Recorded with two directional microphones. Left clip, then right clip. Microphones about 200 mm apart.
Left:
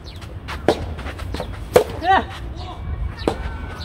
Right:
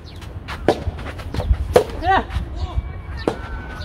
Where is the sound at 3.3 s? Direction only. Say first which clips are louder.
Even; centre (ahead or behind).